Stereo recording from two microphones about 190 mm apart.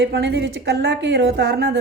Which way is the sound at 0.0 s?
60° right (ahead or behind).